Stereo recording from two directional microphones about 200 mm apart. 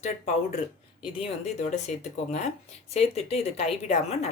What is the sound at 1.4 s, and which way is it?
A woman's voice, 35° left (ahead or behind).